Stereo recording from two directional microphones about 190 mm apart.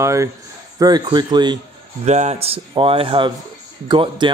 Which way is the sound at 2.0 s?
35° right (ahead or behind).